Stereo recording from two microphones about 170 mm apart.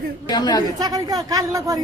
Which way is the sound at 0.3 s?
25° left (ahead or behind).